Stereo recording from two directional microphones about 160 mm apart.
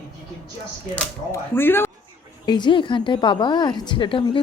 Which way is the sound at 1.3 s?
15° left (ahead or behind).